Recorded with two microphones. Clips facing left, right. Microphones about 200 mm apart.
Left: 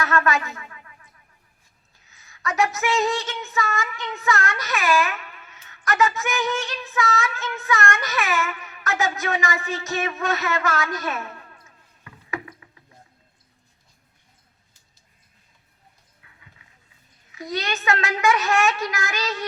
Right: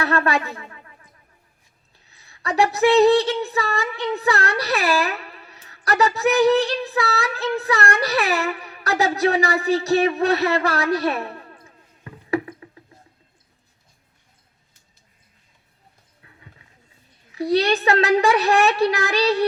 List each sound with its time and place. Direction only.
0.0 s a sound: 35° right (ahead or behind)
2.0 s a woman's voice: 35° right (ahead or behind)
16.2 s run: 30° right (ahead or behind)
17.3 s a child's voice: 35° right (ahead or behind)